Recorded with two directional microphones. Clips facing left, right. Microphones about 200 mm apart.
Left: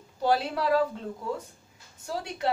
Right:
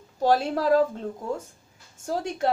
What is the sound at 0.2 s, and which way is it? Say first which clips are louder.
Speech: right 4 dB; 45° right (ahead or behind).